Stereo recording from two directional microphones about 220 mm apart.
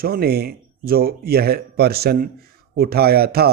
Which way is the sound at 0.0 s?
45° right (ahead or behind).